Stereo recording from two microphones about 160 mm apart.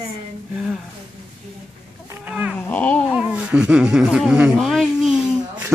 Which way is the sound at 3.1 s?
5° right (ahead or behind).